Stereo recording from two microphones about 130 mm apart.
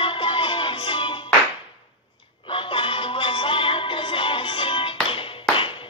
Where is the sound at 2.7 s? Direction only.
40° left (ahead or behind).